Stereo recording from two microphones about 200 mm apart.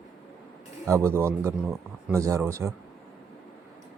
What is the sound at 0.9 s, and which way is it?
Speech, 15° right (ahead or behind).